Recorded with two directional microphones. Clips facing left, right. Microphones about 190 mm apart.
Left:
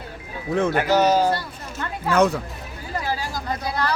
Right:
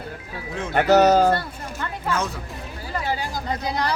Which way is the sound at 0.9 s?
65° right (ahead or behind).